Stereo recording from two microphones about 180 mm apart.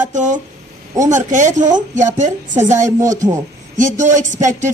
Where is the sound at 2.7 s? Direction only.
15° right (ahead or behind).